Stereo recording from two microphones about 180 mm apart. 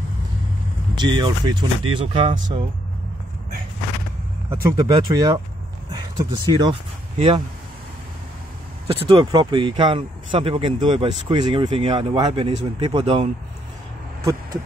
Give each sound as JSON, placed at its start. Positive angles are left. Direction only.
{"t": 0.9, "sound": "speech", "side_deg": -25}
{"t": 4.7, "sound": "speech", "side_deg": -25}
{"t": 8.8, "sound": "speech", "side_deg": -30}